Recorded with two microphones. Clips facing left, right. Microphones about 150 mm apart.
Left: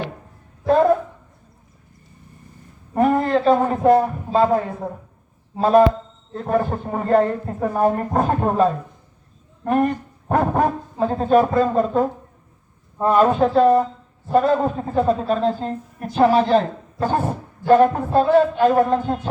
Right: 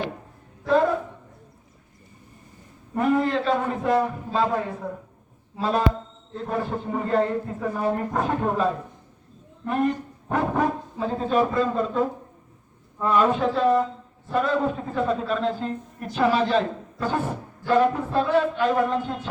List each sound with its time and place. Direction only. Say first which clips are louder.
2.9 s a man's voice: left 4 dB; 45° left (ahead or behind)
9.6 s a man's voice: left 5 dB; 50° left (ahead or behind)